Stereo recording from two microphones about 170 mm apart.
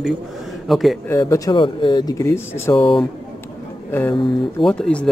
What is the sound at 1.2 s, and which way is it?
Speech, 25° left (ahead or behind).